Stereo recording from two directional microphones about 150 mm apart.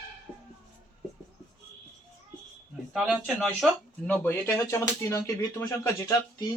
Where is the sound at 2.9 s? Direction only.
Centre (ahead or behind).